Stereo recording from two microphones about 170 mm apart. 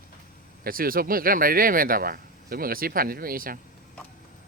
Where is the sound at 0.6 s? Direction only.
60° right (ahead or behind).